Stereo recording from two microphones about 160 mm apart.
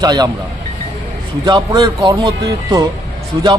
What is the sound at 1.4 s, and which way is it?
A man's voice, 25° right (ahead or behind).